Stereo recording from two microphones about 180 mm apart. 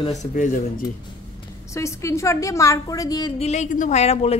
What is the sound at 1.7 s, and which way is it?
A woman's voice, 15° left (ahead or behind).